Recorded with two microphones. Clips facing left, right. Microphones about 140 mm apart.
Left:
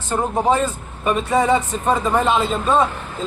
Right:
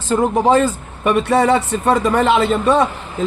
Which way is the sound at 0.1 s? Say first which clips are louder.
Right 5 dB; 90° right.